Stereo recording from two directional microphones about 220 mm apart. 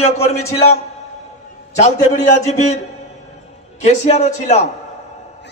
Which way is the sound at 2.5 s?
30° left (ahead or behind).